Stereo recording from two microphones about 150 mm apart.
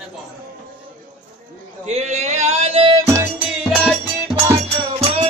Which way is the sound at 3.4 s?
Centre (ahead or behind).